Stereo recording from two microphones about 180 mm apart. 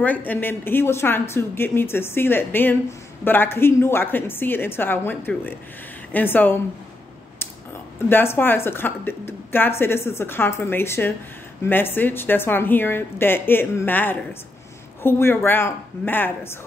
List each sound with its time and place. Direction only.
0.0 s a woman's voice: 10° left (ahead or behind)
8.1 s a woman's voice: 10° left (ahead or behind)